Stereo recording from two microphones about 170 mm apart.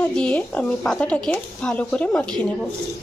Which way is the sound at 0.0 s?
5° left (ahead or behind).